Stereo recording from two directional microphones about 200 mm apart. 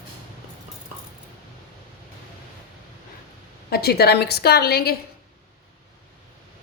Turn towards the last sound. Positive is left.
turn(degrees=50)  # may be behind; listen again after turning